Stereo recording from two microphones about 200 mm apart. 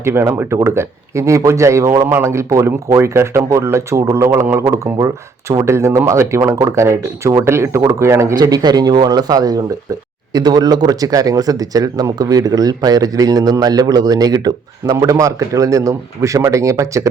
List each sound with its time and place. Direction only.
0.0 s speech: 10° right (ahead or behind)